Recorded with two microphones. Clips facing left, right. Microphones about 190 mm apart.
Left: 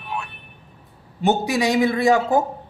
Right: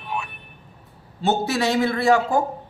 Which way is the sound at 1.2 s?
15° left (ahead or behind).